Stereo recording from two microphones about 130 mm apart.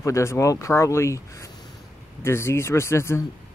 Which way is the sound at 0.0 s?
20° left (ahead or behind).